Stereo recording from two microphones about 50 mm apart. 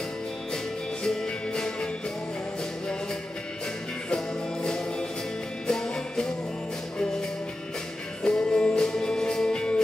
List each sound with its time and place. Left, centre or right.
1.0 s music: centre
4.1 s music: centre